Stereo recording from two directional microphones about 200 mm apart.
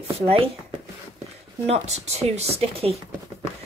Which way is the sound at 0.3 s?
25° right (ahead or behind).